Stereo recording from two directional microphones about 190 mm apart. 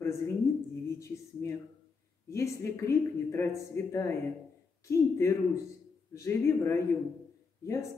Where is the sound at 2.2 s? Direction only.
15° left (ahead or behind).